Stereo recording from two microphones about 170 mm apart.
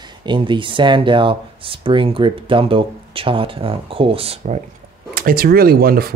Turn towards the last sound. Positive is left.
turn(degrees=-65)  # may be behind; listen again after turning